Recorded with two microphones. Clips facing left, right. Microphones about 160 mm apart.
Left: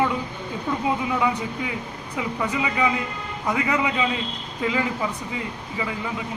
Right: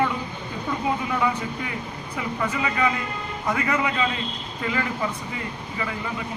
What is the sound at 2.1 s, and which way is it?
Speech, 15° left (ahead or behind).